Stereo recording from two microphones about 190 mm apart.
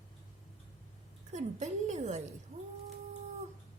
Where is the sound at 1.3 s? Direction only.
40° right (ahead or behind).